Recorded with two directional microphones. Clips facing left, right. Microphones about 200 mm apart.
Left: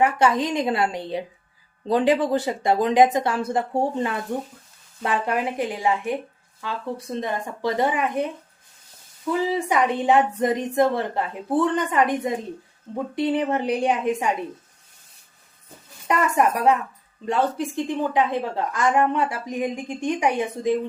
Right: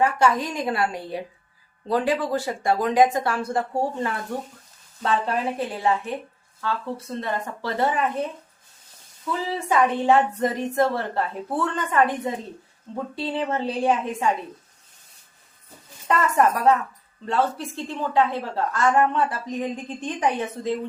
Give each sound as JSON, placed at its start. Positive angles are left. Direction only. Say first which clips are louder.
{"t": 0.0, "sound": "a woman's voice", "louder": "left 1 dB", "side_deg": 20}
{"t": 9.6, "sound": "a woman's voice", "louder": "right 5 dB", "side_deg": 15}
{"t": 16.0, "sound": "a woman's voice", "louder": "even", "side_deg": 15}